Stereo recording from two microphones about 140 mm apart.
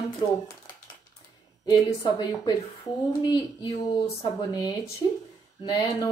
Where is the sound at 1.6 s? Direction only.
30° left (ahead or behind).